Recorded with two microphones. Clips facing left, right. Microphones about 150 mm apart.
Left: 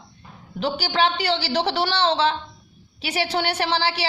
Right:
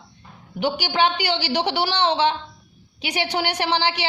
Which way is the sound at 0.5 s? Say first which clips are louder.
Right 1 dB; 15° right (ahead or behind).